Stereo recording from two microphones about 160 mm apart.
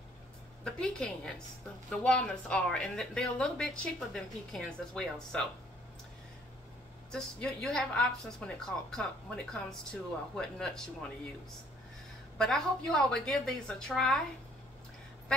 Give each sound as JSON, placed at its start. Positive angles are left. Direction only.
{"t": 0.7, "sound": "speech", "side_deg": 5}
{"t": 7.1, "sound": "speech", "side_deg": 5}
{"t": 12.4, "sound": "speech", "side_deg": 0}